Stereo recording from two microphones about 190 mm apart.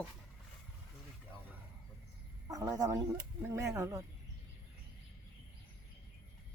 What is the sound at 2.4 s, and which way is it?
Speech, 20° right (ahead or behind).